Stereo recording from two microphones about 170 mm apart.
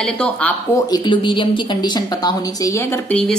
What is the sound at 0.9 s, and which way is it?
Speech, 30° left (ahead or behind).